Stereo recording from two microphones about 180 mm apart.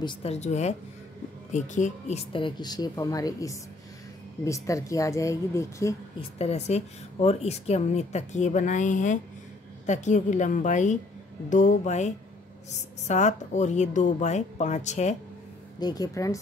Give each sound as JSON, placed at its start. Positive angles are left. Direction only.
{"t": 0.0, "sound": "a woman's voice", "side_deg": 30}
{"t": 6.3, "sound": "a woman's voice", "side_deg": 35}
{"t": 15.8, "sound": "speech", "side_deg": 20}